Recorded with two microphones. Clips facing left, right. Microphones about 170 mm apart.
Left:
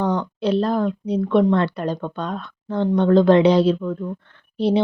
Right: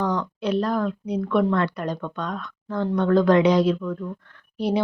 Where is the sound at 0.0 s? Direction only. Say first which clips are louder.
Left 3 dB; 30° left (ahead or behind).